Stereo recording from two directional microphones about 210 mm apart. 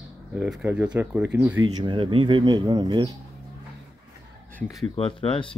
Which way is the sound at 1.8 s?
25° right (ahead or behind).